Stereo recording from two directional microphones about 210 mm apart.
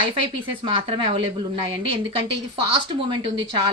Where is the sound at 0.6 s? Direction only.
25° right (ahead or behind).